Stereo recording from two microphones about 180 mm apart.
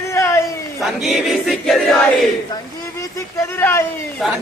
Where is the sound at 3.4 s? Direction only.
15° left (ahead or behind).